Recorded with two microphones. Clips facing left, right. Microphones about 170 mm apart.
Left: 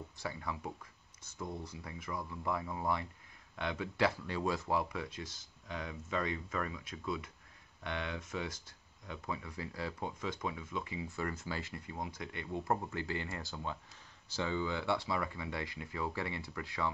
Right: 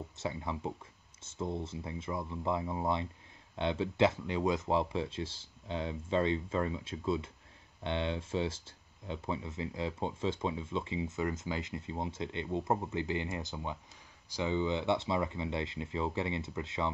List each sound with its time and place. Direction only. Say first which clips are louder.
0.2 s speech: right 4 dB; 25° right (ahead or behind)